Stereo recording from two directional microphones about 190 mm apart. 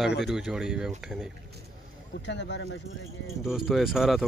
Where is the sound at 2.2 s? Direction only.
65° left (ahead or behind).